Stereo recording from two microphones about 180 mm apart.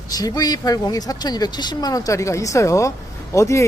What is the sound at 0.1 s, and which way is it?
A man's voice, 20° left (ahead or behind).